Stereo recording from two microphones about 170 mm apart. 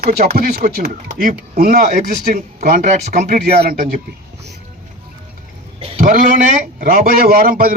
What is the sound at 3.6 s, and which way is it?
Speech, 55° right (ahead or behind).